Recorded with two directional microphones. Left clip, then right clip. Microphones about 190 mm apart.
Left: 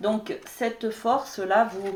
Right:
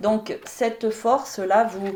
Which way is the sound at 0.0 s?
45° right (ahead or behind).